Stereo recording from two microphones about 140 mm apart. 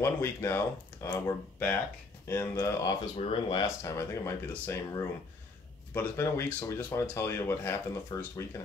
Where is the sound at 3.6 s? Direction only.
20° left (ahead or behind).